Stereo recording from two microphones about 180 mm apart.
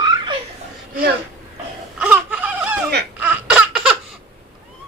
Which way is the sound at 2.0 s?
10° right (ahead or behind).